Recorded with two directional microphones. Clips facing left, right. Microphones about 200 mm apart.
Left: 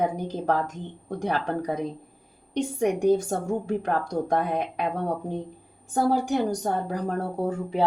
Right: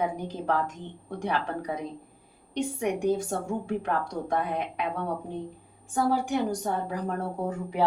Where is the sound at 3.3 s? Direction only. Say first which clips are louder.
Left 3 dB; 40° left (ahead or behind).